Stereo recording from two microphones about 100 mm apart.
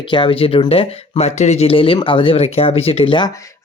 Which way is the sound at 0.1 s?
60° left (ahead or behind).